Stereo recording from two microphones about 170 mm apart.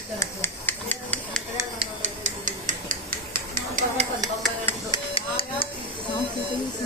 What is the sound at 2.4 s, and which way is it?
Tick-tock, 50° right (ahead or behind).